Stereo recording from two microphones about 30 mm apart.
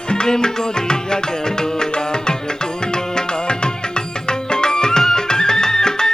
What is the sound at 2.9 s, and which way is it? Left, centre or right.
Music, left.